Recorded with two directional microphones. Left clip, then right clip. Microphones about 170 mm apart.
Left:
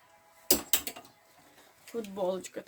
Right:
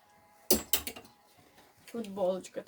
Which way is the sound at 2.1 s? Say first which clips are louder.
Right 2 dB; 15° left (ahead or behind).